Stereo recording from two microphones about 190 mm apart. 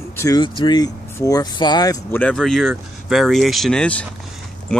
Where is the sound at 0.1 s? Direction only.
15° left (ahead or behind).